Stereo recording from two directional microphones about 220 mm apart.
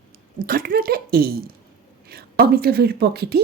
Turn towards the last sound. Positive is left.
turn(degrees=-45)  # may be behind; listen again after turning